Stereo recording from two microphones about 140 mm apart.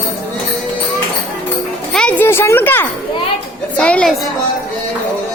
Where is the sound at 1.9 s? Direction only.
10° left (ahead or behind).